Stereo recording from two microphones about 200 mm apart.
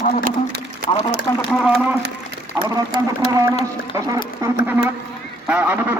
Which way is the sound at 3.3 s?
15° right (ahead or behind).